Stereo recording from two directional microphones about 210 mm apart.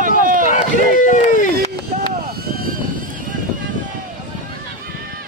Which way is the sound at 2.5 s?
45° right (ahead or behind).